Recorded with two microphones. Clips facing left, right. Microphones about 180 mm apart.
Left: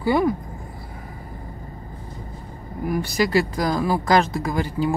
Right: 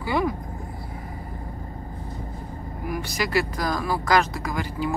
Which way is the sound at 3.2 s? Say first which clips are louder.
Left 4 dB; 25° left (ahead or behind).